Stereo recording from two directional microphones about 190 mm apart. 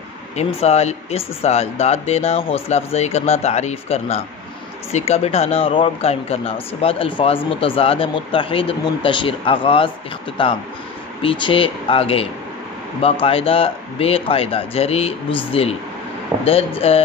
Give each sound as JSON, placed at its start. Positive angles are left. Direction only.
{"t": 0.4, "sound": "speech", "side_deg": 35}